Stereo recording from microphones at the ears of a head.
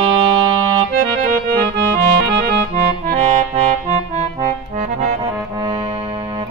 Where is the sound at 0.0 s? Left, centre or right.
Right.